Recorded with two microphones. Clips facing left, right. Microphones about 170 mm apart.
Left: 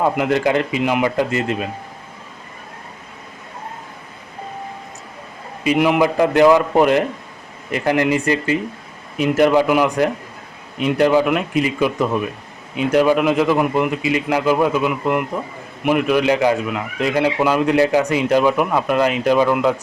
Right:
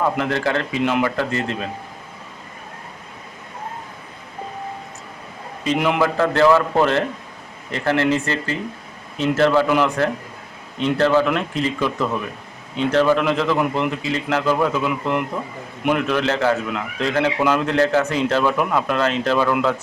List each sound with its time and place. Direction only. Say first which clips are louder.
0.2 s a man's voice: left 4 dB; 15° left (ahead or behind)
5.6 s a man's voice: left 4 dB; 5° left (ahead or behind)
6.0 s a man's voice: left 2 dB; 15° left (ahead or behind)